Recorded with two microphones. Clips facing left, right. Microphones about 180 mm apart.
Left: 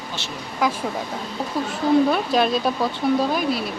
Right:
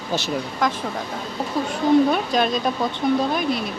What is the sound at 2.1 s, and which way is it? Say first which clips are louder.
Speech: left 1 dB; centre (ahead or behind).